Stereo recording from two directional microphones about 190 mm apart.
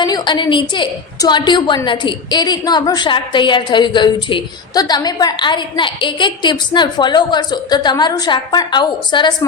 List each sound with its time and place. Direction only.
0.0 s a woman's voice: 20° left (ahead or behind)